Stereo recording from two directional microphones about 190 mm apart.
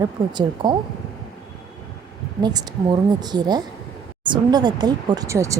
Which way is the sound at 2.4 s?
25° right (ahead or behind).